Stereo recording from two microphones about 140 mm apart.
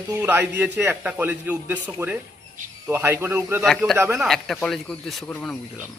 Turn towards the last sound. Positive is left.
turn(degrees=10)  # may be behind; listen again after turning